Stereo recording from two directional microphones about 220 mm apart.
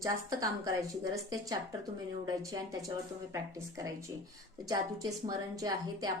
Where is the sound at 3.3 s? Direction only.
15° right (ahead or behind).